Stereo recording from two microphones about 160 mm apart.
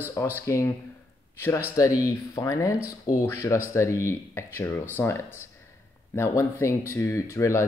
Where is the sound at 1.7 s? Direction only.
20° left (ahead or behind).